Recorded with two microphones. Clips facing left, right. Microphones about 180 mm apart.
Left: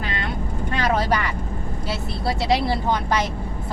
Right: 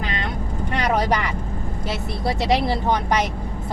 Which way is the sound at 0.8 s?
15° right (ahead or behind).